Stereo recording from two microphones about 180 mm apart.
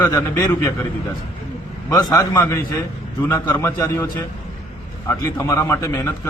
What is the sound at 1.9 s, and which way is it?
A man's voice, 20° left (ahead or behind).